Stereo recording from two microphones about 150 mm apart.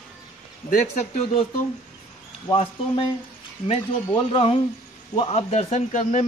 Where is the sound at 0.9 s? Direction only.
55° left (ahead or behind).